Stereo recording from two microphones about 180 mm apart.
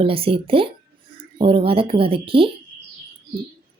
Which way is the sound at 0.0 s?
30° right (ahead or behind).